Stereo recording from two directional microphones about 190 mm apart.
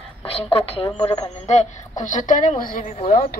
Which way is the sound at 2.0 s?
40° left (ahead or behind).